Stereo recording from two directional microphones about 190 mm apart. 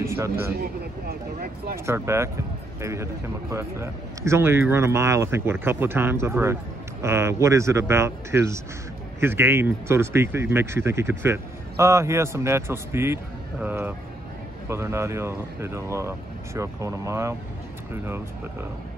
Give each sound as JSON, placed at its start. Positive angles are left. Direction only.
{"t": 0.0, "sound": "speech", "side_deg": -15}
{"t": 0.6, "sound": "speech", "side_deg": -50}
{"t": 1.9, "sound": "speech", "side_deg": -15}